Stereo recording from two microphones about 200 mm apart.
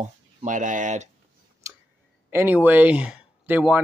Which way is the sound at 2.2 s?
10° right (ahead or behind).